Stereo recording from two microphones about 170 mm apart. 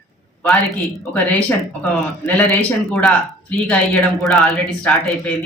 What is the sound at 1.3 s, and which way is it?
A woman's voice, 10° left (ahead or behind).